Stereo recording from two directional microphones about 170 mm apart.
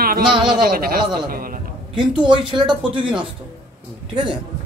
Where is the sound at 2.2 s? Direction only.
25° right (ahead or behind).